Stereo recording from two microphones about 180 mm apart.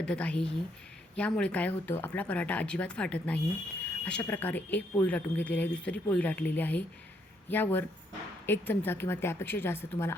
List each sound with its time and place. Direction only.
0.0 s speech: 5° left (ahead or behind)